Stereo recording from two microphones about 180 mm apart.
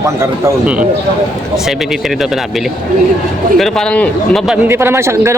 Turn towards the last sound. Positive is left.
turn(degrees=-15)  # may be behind; listen again after turning